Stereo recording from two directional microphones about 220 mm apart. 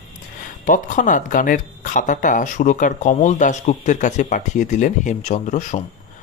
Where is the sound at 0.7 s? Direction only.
35° left (ahead or behind).